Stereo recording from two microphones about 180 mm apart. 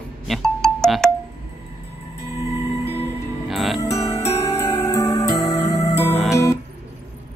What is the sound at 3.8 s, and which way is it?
Music, 15° left (ahead or behind).